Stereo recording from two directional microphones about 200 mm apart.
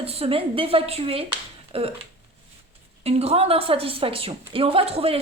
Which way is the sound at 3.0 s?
30° right (ahead or behind).